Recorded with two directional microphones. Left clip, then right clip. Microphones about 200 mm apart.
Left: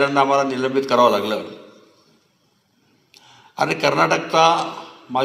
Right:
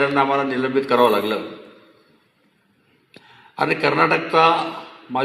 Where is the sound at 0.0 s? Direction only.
25° left (ahead or behind).